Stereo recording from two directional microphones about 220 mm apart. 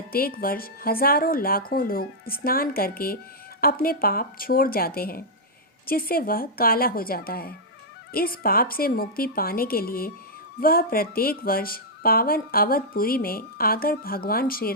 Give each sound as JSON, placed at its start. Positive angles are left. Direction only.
{"t": 0.1, "sound": "speech", "side_deg": 40}